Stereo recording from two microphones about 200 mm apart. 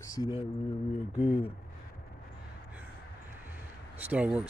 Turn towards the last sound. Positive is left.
turn(degrees=-5)  # may be behind; listen again after turning